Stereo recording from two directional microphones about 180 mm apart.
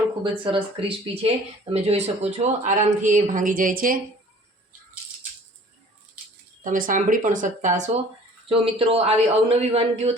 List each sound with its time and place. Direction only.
0.2 s speech: 30° right (ahead or behind); by 3.9 s 50° right (ahead or behind)
6.7 s speech: 50° right (ahead or behind)
8.4 s a man's voice: 30° right (ahead or behind)